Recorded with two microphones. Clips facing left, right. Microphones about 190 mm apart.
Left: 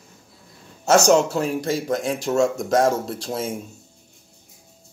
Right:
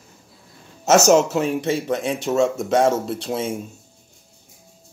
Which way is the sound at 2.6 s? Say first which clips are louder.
Right 1 dB; 30° right (ahead or behind).